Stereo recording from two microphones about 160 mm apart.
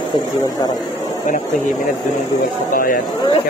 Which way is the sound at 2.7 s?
60° left (ahead or behind).